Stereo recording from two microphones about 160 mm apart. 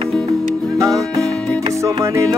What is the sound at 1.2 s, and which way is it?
Music, 5° left (ahead or behind).